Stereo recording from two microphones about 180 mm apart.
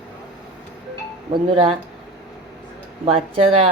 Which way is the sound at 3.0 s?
35° right (ahead or behind).